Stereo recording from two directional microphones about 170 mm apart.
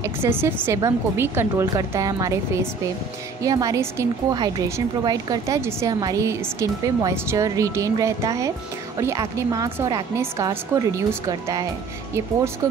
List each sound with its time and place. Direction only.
0.2 s a woman's voice: 15° right (ahead or behind)